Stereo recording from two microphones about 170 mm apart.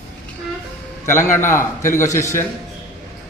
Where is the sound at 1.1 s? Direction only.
15° left (ahead or behind).